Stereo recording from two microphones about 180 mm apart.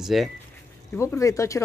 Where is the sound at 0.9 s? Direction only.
15° left (ahead or behind).